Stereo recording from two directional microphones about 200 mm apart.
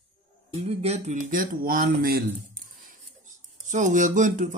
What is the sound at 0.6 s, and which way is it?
Speech, 30° right (ahead or behind).